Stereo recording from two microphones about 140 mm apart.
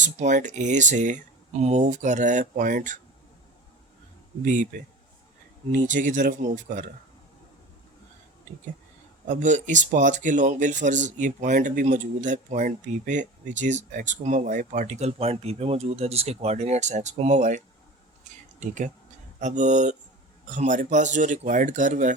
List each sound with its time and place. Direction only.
0.0 s speech: 60° right (ahead or behind)
4.4 s speech: 65° right (ahead or behind)
9.2 s speech: 65° right (ahead or behind)
18.3 s a sound: 60° right (ahead or behind)
18.6 s speech: 60° right (ahead or behind)